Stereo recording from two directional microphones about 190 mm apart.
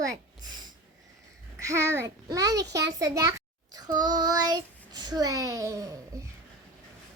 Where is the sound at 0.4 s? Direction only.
20° right (ahead or behind).